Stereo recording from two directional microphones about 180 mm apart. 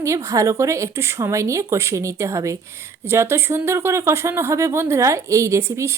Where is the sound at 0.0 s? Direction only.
15° right (ahead or behind).